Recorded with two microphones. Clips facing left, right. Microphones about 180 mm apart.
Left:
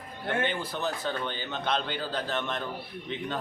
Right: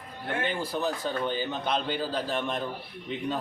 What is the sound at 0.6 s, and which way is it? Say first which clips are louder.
Speech: right 4 dB; 35° right (ahead or behind).